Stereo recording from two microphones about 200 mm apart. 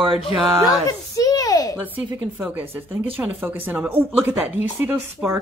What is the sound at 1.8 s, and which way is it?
Speech, 5° right (ahead or behind).